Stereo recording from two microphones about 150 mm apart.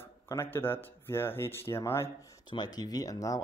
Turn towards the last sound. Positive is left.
turn(degrees=25)  # may be behind; listen again after turning